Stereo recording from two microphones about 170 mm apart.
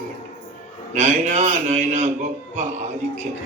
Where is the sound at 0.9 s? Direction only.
40° right (ahead or behind).